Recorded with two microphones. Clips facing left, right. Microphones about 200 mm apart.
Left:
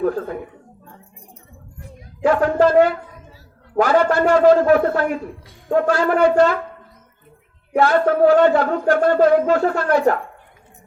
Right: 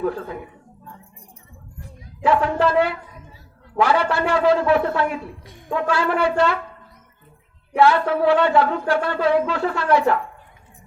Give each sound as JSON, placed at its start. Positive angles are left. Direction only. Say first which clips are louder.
{"t": 0.0, "sound": "a sound", "louder": "left 4 dB", "side_deg": 45}
{"t": 2.2, "sound": "speech", "louder": "left 4 dB", "side_deg": 45}
{"t": 7.8, "sound": "speech", "louder": "left 2 dB", "side_deg": 45}